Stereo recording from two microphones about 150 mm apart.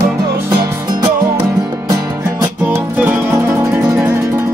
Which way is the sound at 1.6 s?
20° right (ahead or behind).